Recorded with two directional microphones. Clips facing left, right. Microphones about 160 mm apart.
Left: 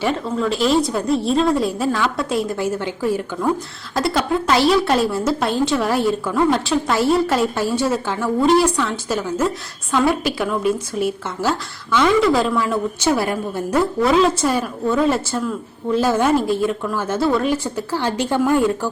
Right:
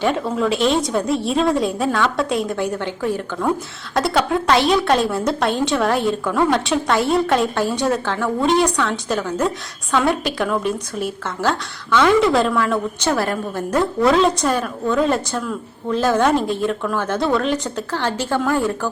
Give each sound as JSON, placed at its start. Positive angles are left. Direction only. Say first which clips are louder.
{"t": 0.0, "sound": "a woman's voice", "louder": "right 1 dB", "side_deg": -5}